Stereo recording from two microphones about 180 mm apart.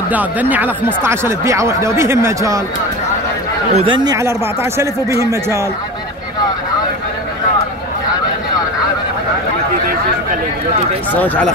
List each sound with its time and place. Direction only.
0.1 s speech: 10° right (ahead or behind)
3.7 s speech: 30° right (ahead or behind)
11.1 s speech: 10° left (ahead or behind)